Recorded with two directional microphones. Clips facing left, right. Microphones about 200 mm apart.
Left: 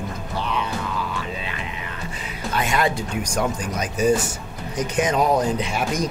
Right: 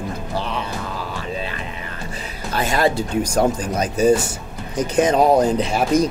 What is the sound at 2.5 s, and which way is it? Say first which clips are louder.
Speech: right 3 dB; 35° right (ahead or behind).